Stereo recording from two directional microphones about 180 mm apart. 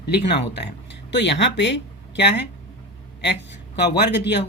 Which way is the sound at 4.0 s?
70° left (ahead or behind).